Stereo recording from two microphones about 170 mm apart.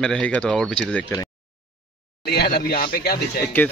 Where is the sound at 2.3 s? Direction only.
70° left (ahead or behind).